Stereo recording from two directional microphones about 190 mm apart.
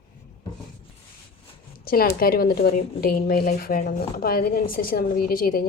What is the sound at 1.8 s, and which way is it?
Speech, 50° left (ahead or behind).